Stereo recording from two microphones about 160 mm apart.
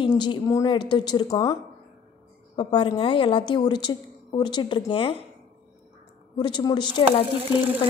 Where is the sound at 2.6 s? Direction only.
30° left (ahead or behind).